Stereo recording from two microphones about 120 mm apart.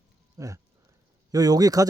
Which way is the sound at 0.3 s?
25° right (ahead or behind).